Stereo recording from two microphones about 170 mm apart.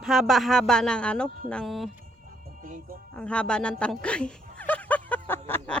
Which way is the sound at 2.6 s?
50° right (ahead or behind).